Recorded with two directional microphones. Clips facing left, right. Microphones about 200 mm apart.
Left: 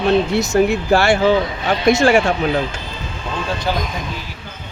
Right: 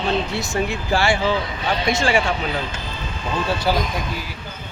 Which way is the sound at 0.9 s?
60° left (ahead or behind).